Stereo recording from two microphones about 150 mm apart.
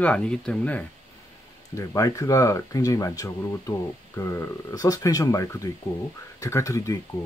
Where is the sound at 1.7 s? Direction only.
20° left (ahead or behind).